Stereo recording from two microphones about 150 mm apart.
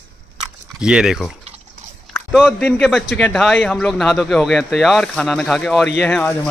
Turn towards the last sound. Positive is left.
turn(degrees=10)  # may be behind; listen again after turning